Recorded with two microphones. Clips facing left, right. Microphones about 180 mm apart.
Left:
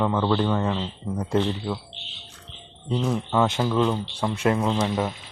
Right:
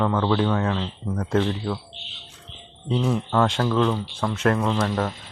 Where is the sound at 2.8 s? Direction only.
Centre (ahead or behind).